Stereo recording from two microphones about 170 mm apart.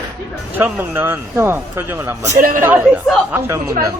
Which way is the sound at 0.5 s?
10° right (ahead or behind).